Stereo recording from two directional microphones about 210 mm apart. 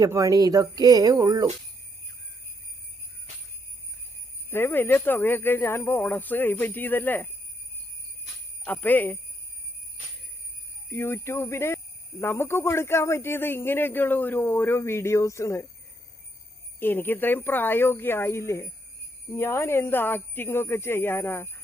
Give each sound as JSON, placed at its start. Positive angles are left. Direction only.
{"t": 0.0, "sound": "speech", "side_deg": -15}
{"t": 4.4, "sound": "speech", "side_deg": 10}
{"t": 8.6, "sound": "speech", "side_deg": 10}
{"t": 10.8, "sound": "speech", "side_deg": 10}
{"t": 16.8, "sound": "speech", "side_deg": 10}